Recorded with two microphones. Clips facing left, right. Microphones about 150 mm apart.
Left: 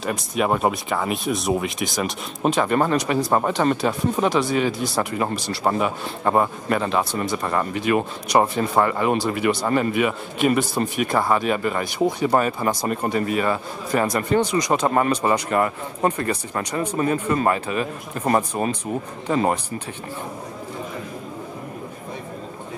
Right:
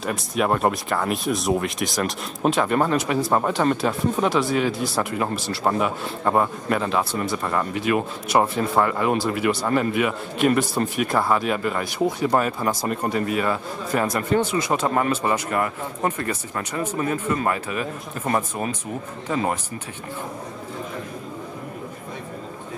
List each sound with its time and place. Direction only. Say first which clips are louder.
0.0 s speech: left 1 dB; centre (ahead or behind)
14.7 s speech: left 2 dB; 15° left (ahead or behind)
15.2 s speech: left 3 dB; 30° left (ahead or behind)